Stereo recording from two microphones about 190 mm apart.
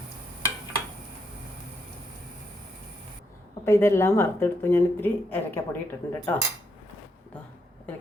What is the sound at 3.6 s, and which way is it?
Speech, 15° left (ahead or behind).